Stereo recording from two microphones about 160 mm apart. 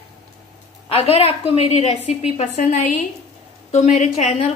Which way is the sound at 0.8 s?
40° left (ahead or behind).